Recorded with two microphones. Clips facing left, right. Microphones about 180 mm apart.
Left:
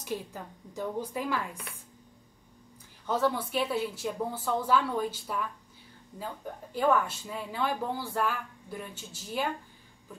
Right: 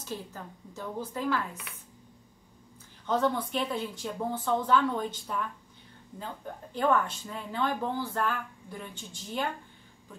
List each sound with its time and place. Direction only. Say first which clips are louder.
0.0 s speech: left 3 dB; 15° left (ahead or behind)
3.1 s speech: right 1 dB; 5° left (ahead or behind)